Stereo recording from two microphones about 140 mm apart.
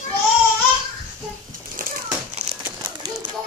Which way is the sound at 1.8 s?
75° right (ahead or behind).